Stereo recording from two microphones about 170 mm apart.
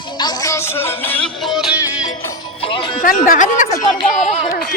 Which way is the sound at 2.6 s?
30° left (ahead or behind).